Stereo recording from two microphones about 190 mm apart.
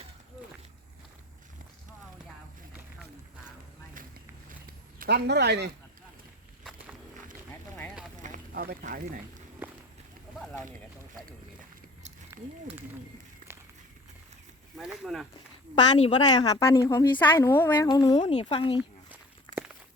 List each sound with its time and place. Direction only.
4.9 s speech: 60° right (ahead or behind)
8.2 s a sound: 45° right (ahead or behind)
9.6 s run: 10° right (ahead or behind)
12.3 s a sound: 15° right (ahead or behind)
13.5 s walk: 10° right (ahead or behind)
14.8 s speech: 5° right (ahead or behind)
16.0 s a woman's voice: 25° left (ahead or behind)
18.2 s speech: 30° left (ahead or behind)
18.8 s walk: 10° right (ahead or behind)